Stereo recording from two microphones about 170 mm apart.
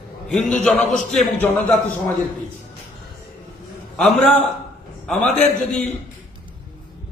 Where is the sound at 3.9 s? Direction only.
5° left (ahead or behind).